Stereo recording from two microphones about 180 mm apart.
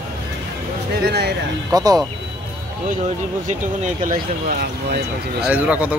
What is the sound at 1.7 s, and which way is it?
Speech, 20° right (ahead or behind).